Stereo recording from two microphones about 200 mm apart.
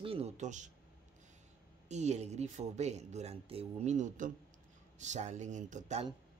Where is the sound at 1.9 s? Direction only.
35° right (ahead or behind).